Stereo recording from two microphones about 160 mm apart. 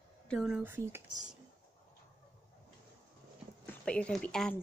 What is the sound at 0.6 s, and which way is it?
Speech, 15° right (ahead or behind).